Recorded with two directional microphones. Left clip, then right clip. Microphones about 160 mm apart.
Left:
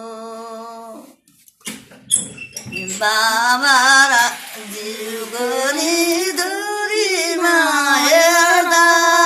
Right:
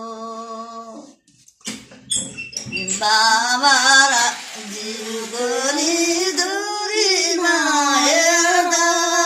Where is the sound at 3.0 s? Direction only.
10° left (ahead or behind).